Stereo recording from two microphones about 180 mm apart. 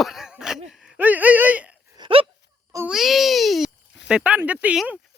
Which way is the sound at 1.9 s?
25° right (ahead or behind).